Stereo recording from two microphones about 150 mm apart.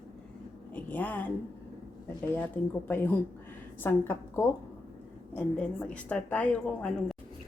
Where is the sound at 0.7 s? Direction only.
10° left (ahead or behind).